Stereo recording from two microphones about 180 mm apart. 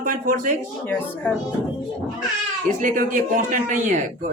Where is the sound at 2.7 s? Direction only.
45° right (ahead or behind).